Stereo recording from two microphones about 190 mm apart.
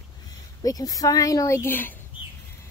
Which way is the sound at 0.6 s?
20° left (ahead or behind).